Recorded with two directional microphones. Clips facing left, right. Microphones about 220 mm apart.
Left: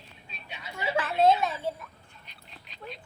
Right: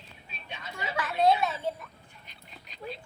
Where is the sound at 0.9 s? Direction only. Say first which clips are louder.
Left 3 dB; 30° left (ahead or behind).